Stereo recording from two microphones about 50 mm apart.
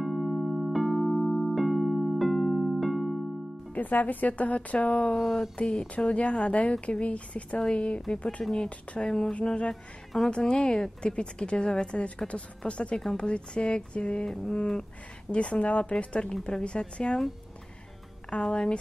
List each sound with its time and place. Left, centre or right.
0.0 s electric piano: centre
3.7 s a woman's voice: left
5.1 s a sound: centre
5.9 s a woman's voice: left
13.0 s a woman's voice: centre
13.3 s a woman's voice: left
18.3 s a woman's voice: centre